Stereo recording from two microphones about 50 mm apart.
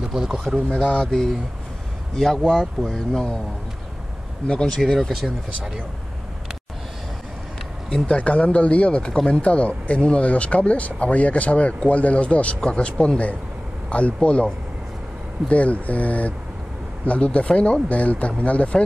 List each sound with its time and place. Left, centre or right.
0.1 s a sound: centre
0.9 s speech: centre
4.5 s speech: centre
8.1 s speech: left